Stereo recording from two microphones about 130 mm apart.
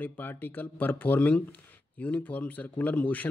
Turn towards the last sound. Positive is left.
turn(degrees=15)  # may be behind; listen again after turning